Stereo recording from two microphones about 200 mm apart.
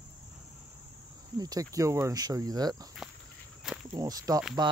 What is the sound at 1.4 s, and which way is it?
Speech, 20° right (ahead or behind).